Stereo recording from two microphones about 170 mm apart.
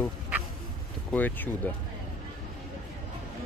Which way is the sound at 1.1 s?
10° left (ahead or behind).